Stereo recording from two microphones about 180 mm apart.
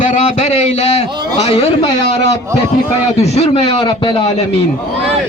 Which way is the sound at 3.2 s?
35° left (ahead or behind).